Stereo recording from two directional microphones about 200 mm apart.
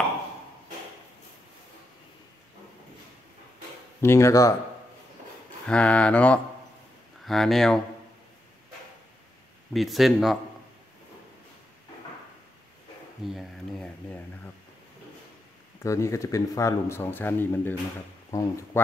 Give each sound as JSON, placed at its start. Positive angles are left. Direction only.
{"t": 4.0, "sound": "speech", "side_deg": 15}
{"t": 5.7, "sound": "speech", "side_deg": 5}
{"t": 9.8, "sound": "speech", "side_deg": 0}
{"t": 13.2, "sound": "a sound", "side_deg": 0}
{"t": 15.8, "sound": "speech", "side_deg": 15}